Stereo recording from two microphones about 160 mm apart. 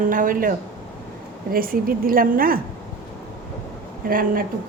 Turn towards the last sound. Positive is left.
turn(degrees=-65)  # may be behind; listen again after turning